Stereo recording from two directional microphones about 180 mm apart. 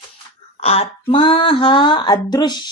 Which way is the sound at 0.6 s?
35° left (ahead or behind).